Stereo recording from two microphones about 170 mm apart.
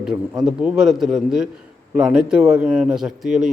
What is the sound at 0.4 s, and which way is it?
Speech, 5° right (ahead or behind).